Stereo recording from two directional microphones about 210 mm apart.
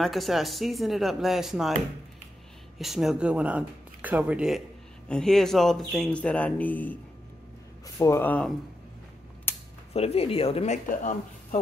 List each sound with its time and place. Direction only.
0.0 s speech: centre (ahead or behind)
2.8 s speech: centre (ahead or behind)
9.5 s mechanisms: 10° left (ahead or behind)
9.9 s speech: 30° left (ahead or behind)